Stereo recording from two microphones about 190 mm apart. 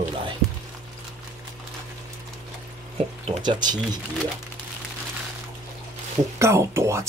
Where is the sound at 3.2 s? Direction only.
25° right (ahead or behind).